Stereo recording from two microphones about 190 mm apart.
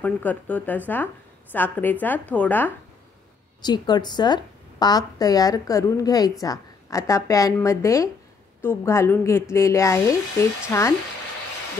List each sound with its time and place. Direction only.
0.0 s a woman's voice: 10° left (ahead or behind)
3.6 s a woman's voice: 20° left (ahead or behind)